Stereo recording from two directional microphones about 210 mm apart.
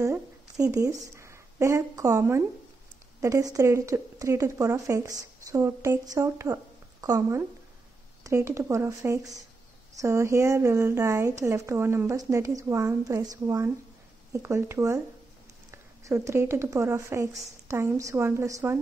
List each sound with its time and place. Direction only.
0.0 s a woman's voice: 15° right (ahead or behind)
16.0 s a woman's voice: 15° right (ahead or behind)